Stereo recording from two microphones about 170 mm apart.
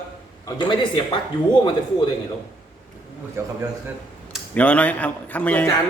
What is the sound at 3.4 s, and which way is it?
Speech, 15° right (ahead or behind).